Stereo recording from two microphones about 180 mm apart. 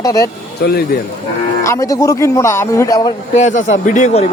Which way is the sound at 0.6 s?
65° left (ahead or behind).